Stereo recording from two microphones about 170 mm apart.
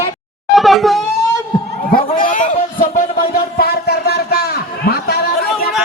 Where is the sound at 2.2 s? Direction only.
50° left (ahead or behind); by 5.2 s 65° left (ahead or behind).